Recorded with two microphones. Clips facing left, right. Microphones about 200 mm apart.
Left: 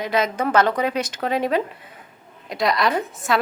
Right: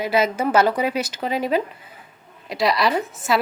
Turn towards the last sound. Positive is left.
turn(degrees=-5)  # may be behind; listen again after turning